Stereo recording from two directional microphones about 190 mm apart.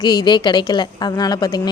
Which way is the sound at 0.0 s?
20° left (ahead or behind).